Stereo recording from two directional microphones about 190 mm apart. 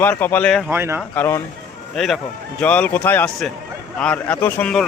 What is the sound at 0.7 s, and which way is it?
Speech, 10° right (ahead or behind).